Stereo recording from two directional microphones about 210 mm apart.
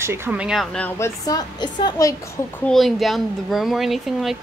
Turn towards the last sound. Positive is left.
turn(degrees=0)  # may be behind; listen again after turning